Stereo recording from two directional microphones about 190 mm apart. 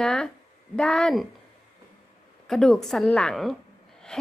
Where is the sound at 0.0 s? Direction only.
5° left (ahead or behind).